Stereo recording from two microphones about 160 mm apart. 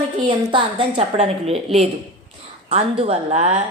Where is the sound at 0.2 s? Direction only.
30° right (ahead or behind).